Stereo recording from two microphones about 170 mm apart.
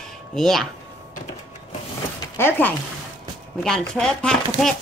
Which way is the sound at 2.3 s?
10° left (ahead or behind).